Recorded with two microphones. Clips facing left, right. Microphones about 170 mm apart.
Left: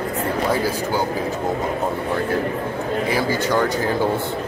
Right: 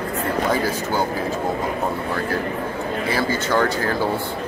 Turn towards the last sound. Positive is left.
turn(degrees=15)  # may be behind; listen again after turning